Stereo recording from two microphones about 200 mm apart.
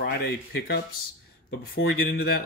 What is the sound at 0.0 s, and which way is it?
Speech, 55° left (ahead or behind).